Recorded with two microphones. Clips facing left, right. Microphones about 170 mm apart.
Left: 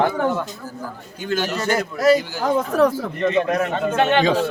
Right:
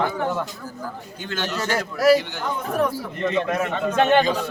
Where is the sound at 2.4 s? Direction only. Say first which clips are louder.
Left 6 dB; 90° left.